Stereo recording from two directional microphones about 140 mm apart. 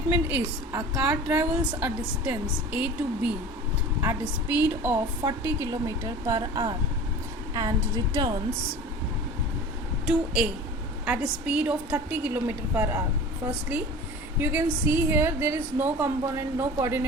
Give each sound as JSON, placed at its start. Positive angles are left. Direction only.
{"t": 0.1, "sound": "a woman's voice", "side_deg": -15}
{"t": 10.1, "sound": "a woman's voice", "side_deg": -5}